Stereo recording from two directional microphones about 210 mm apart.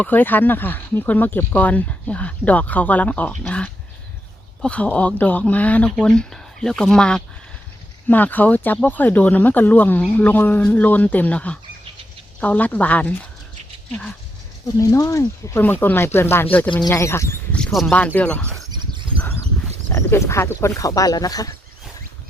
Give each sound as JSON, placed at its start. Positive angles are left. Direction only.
{"t": 0.0, "sound": "speech", "side_deg": 10}
{"t": 14.8, "sound": "speech", "side_deg": 15}
{"t": 19.9, "sound": "speech", "side_deg": 10}